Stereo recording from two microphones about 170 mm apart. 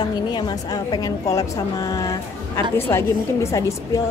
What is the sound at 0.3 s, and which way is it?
A woman's voice, 25° left (ahead or behind).